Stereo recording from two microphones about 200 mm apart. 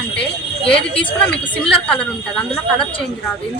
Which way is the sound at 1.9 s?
5° left (ahead or behind).